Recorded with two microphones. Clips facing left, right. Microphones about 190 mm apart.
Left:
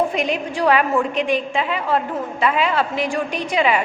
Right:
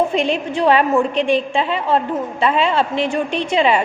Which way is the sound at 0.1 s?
25° right (ahead or behind).